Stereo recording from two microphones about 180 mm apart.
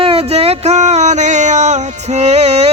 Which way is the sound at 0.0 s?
30° right (ahead or behind).